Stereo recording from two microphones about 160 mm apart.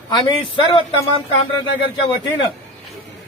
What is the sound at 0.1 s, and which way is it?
Speech, 30° left (ahead or behind).